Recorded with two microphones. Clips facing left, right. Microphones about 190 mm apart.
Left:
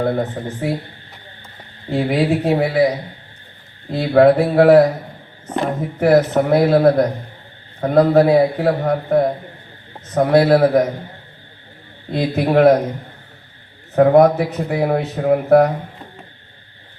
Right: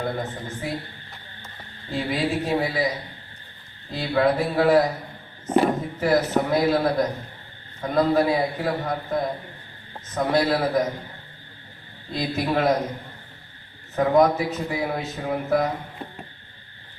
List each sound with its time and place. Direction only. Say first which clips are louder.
0.0 s a man's voice: left 9 dB; 60° left (ahead or behind)
1.9 s a man's voice: left 8 dB; 60° left (ahead or behind)
3.9 s a man's voice: left 9 dB; 60° left (ahead or behind)
6.0 s a man's voice: left 8 dB; 60° left (ahead or behind)
12.1 s a man's voice: left 8 dB; 60° left (ahead or behind)
13.9 s a man's voice: left 7 dB; 65° left (ahead or behind)